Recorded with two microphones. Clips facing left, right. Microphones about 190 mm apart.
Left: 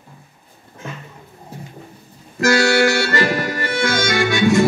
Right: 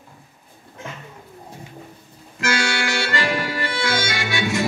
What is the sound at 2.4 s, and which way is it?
Accordion, 40° left (ahead or behind).